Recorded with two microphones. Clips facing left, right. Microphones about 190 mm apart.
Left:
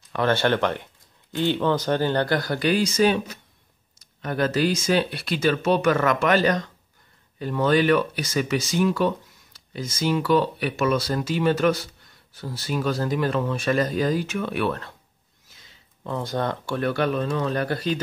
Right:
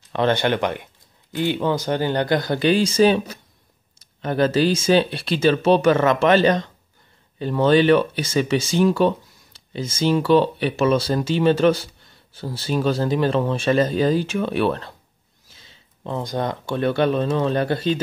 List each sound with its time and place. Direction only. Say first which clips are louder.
0.1 s speech: right 2 dB; 20° right (ahead or behind)